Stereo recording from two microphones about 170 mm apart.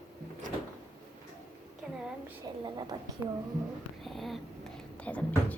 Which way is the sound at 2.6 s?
25° right (ahead or behind).